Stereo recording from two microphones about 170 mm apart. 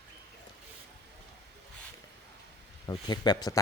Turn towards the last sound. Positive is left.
turn(degrees=25)  # may be behind; listen again after turning